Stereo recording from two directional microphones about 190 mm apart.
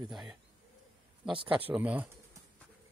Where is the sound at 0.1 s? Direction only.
Centre (ahead or behind).